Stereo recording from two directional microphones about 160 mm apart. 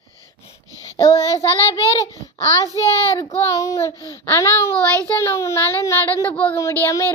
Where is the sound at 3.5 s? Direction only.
20° left (ahead or behind).